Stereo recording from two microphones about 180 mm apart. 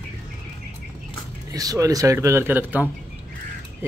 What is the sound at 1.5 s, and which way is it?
Speech, 20° right (ahead or behind).